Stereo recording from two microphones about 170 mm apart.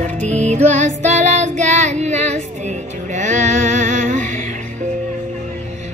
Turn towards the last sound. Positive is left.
turn(degrees=-45)  # may be behind; listen again after turning